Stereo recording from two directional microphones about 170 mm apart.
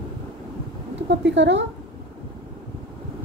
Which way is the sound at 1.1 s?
90° right.